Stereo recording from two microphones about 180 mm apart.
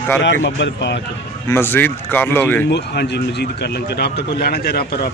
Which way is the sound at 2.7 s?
70° left (ahead or behind).